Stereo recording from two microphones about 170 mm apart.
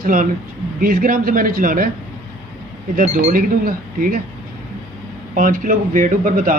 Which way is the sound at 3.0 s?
50° right (ahead or behind).